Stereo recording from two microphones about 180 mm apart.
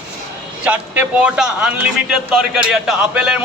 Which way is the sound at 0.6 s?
10° right (ahead or behind).